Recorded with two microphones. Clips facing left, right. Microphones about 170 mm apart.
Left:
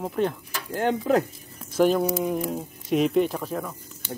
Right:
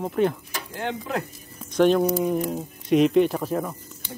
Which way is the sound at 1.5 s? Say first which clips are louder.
Right 2 dB; 5° left (ahead or behind).